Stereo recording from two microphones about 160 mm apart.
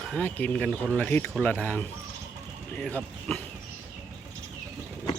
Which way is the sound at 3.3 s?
5° left (ahead or behind).